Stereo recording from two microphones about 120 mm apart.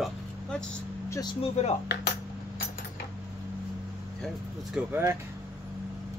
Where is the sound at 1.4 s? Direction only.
60° left (ahead or behind).